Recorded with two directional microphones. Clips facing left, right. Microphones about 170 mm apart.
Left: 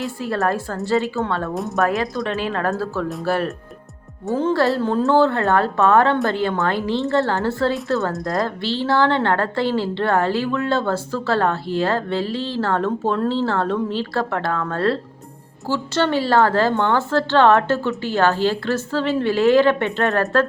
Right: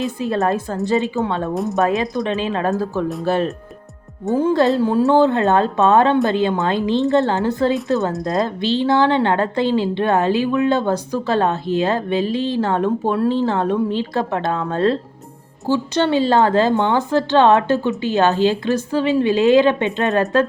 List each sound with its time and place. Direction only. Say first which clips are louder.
0.0 s a woman's voice: right 3 dB; 20° right (ahead or behind)